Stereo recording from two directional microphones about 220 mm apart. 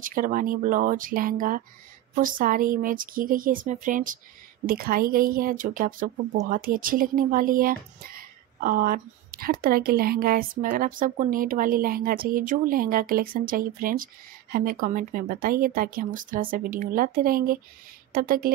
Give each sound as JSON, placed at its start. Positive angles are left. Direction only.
{"t": 0.0, "sound": "speech", "side_deg": -40}